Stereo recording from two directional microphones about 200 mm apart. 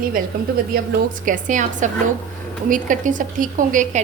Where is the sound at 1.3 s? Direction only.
40° right (ahead or behind).